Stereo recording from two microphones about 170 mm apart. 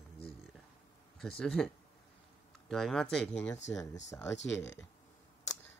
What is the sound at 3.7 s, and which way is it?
Speech, 20° left (ahead or behind).